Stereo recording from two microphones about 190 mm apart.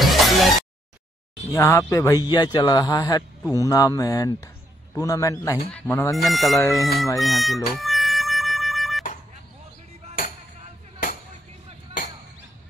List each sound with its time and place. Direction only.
0.0 s music: centre (ahead or behind)
1.5 s speech: 15° left (ahead or behind)
6.2 s speech: centre (ahead or behind)
7.2 s music: centre (ahead or behind)